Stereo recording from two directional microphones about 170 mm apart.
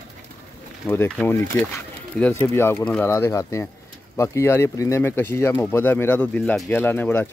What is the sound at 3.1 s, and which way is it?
Speech, 15° left (ahead or behind).